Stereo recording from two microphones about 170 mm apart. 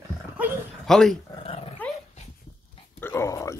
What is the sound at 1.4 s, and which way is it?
Dog, 35° left (ahead or behind).